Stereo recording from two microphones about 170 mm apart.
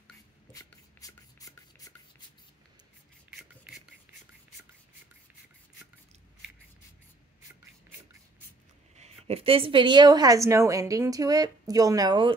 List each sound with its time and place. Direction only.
0.5 s rub: 20° left (ahead or behind)
3.3 s beatboxing: centre (ahead or behind)
8.9 s a woman's voice: 35° right (ahead or behind)